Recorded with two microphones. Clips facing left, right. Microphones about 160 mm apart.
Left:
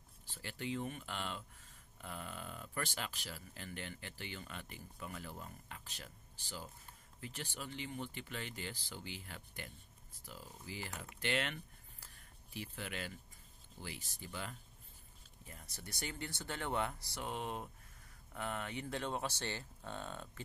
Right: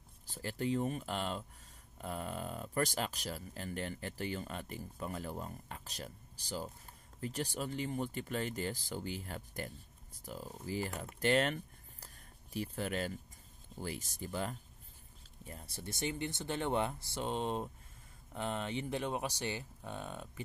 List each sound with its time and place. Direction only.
0.3 s speech: 40° right (ahead or behind)
15.4 s speech: 30° right (ahead or behind); by 20.4 s 15° right (ahead or behind)